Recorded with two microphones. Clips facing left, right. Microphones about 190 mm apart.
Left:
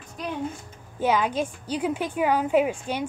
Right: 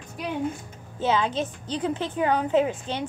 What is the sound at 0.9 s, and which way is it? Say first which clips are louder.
A woman's voice: left 1 dB; 15° left (ahead or behind).